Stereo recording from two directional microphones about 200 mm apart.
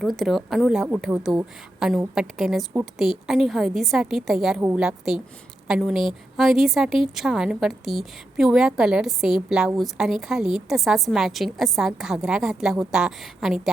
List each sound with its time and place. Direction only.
0.0 s a woman's voice: centre (ahead or behind)